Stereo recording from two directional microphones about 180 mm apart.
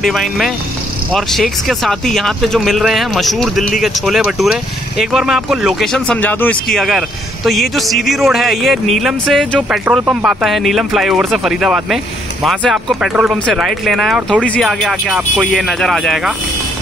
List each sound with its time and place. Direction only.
0.0 s speech: centre (ahead or behind)